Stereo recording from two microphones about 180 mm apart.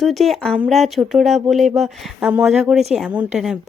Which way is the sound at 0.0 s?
Centre (ahead or behind).